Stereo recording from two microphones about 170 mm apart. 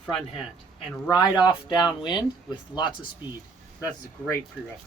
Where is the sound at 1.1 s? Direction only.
25° left (ahead or behind).